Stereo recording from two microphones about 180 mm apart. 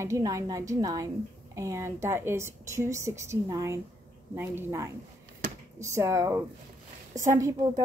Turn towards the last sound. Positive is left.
turn(degrees=-15)  # may be behind; listen again after turning